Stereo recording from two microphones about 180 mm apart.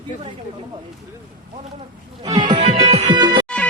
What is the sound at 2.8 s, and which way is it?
Music, 40° right (ahead or behind).